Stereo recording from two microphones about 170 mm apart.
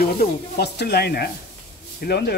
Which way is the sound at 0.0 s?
65° left (ahead or behind).